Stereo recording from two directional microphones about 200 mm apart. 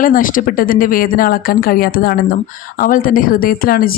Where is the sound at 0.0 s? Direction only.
45° left (ahead or behind).